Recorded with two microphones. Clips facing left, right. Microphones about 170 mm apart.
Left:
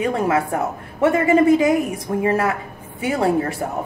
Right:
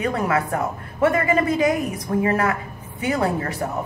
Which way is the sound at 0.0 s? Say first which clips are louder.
Left 3 dB; 25° left (ahead or behind).